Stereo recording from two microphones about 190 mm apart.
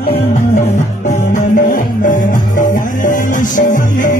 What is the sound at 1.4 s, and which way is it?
Music, 40° left (ahead or behind).